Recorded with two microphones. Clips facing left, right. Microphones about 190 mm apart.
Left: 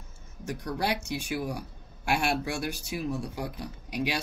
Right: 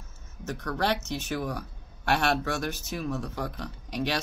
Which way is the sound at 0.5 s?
15° left (ahead or behind).